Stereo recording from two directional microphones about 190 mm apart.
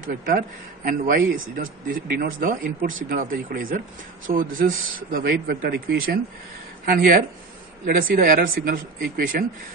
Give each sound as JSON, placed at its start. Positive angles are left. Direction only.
{"t": 0.0, "sound": "a man's voice", "side_deg": -50}